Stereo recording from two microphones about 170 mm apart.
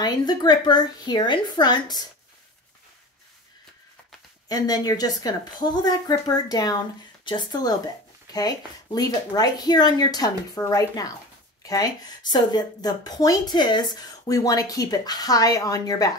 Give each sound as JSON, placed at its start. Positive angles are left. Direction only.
{"t": 0.0, "sound": "a woman's voice", "side_deg": 25}
{"t": 4.5, "sound": "a woman's voice", "side_deg": 20}